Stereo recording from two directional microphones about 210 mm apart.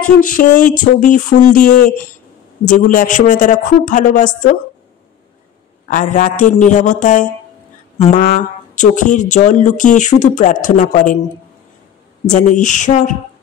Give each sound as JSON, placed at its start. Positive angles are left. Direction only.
{"t": 0.2, "sound": "speech", "side_deg": 40}
{"t": 5.9, "sound": "speech", "side_deg": 35}
{"t": 12.3, "sound": "speech", "side_deg": 35}